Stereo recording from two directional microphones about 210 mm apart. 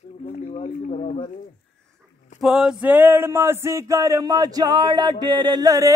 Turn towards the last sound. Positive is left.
turn(degrees=-15)  # may be behind; listen again after turning